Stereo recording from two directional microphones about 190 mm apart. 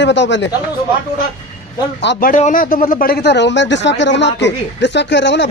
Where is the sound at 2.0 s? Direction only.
65° left (ahead or behind).